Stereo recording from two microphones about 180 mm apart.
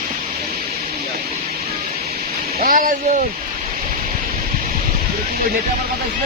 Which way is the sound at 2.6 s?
50° right (ahead or behind).